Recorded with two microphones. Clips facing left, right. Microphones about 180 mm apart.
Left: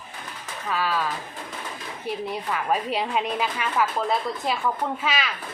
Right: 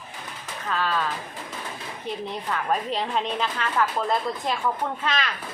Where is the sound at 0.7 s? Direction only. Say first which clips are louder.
Even; 10° left (ahead or behind).